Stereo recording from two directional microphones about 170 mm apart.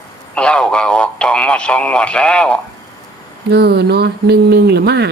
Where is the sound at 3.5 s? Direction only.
70° right (ahead or behind).